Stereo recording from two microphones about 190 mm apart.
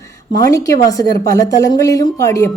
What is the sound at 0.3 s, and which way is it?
A woman's voice, 20° left (ahead or behind).